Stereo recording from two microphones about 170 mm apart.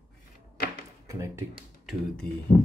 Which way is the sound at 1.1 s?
15° right (ahead or behind).